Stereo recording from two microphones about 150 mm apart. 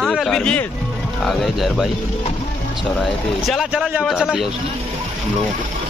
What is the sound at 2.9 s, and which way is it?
Speech, centre (ahead or behind).